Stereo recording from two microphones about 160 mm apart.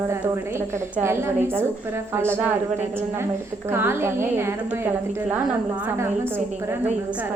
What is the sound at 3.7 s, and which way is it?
Speech, 15° right (ahead or behind).